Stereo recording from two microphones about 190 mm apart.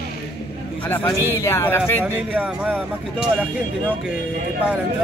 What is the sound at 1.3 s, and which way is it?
Speech, 15° left (ahead or behind).